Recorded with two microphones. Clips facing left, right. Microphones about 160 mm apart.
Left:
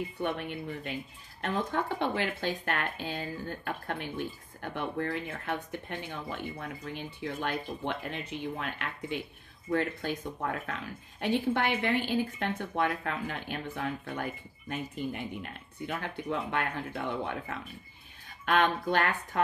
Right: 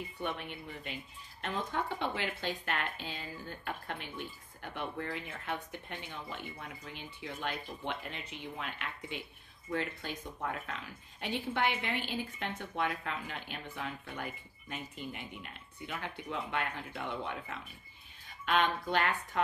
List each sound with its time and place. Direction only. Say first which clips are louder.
0.2 s speech: left 5 dB; 50° left (ahead or behind)